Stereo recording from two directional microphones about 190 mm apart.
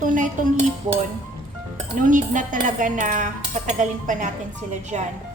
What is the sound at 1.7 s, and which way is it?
Speech, 45° right (ahead or behind).